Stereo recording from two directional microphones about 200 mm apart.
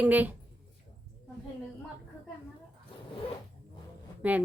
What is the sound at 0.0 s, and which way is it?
Speech, 10° right (ahead or behind).